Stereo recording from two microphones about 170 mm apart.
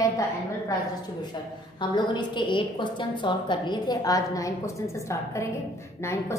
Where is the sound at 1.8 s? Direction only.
25° left (ahead or behind).